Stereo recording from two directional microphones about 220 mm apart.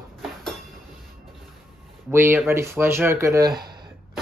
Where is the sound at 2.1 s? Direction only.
10° right (ahead or behind).